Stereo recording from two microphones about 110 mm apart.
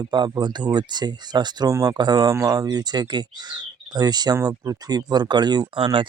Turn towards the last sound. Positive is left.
turn(degrees=-50)  # may be behind; listen again after turning